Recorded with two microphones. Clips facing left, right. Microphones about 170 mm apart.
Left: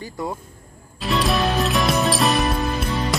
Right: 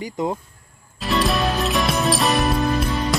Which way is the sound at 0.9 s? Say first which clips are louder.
Even; centre (ahead or behind).